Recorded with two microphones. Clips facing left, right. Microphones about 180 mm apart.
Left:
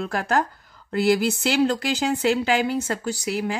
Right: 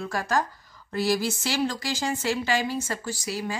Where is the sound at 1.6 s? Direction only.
65° left (ahead or behind).